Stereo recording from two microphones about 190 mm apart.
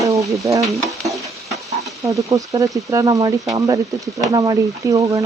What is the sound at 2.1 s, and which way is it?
Speech, 15° right (ahead or behind).